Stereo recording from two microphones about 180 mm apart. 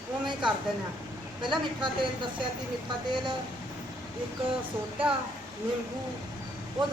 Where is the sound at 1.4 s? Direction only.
25° right (ahead or behind).